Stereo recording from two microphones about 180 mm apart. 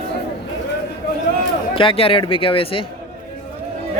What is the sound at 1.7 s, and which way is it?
Speech, 30° left (ahead or behind).